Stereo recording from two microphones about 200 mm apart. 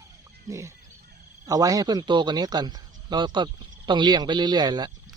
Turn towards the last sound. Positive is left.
turn(degrees=-20)  # may be behind; listen again after turning